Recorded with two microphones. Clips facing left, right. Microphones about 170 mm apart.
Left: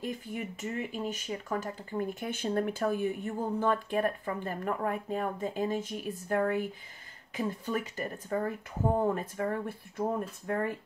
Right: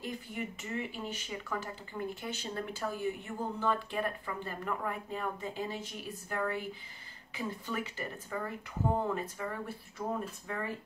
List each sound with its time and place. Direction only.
0.6 s speech: 45° left (ahead or behind)